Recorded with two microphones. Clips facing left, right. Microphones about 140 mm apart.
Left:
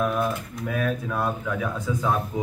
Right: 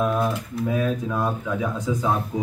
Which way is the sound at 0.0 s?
20° right (ahead or behind).